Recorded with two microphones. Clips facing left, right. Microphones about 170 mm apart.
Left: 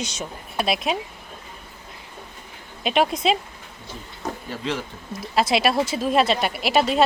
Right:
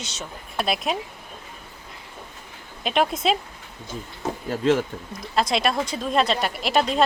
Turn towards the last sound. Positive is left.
turn(degrees=5)  # may be behind; listen again after turning